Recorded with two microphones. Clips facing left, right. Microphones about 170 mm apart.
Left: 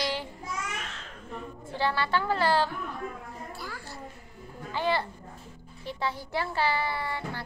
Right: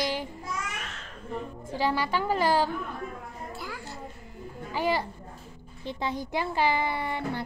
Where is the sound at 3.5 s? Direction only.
20° right (ahead or behind).